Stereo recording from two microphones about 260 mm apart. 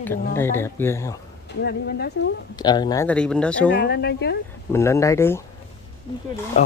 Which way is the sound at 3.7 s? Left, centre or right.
Left.